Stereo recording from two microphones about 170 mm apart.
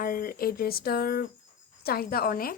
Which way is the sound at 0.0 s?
60° left (ahead or behind).